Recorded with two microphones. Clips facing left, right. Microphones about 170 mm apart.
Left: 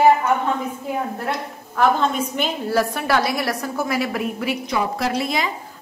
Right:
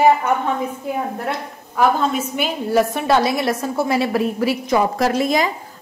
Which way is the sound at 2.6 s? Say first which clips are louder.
Right 5 dB; 20° right (ahead or behind).